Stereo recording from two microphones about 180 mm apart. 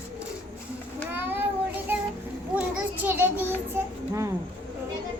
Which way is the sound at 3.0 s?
10° right (ahead or behind).